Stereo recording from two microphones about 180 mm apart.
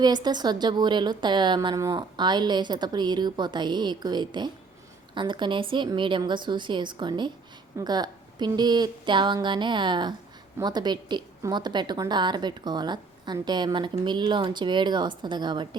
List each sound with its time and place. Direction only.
0.0 s a woman's voice: 25° right (ahead or behind)